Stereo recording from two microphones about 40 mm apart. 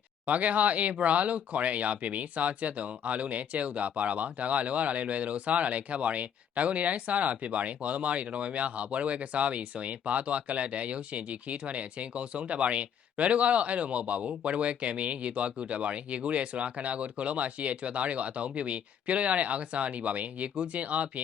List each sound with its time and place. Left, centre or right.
0.3 s speech: right